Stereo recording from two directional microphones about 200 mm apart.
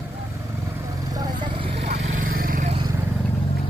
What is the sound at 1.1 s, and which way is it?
Vehicle, 20° right (ahead or behind).